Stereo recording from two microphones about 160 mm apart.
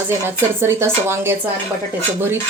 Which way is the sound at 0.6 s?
15° right (ahead or behind).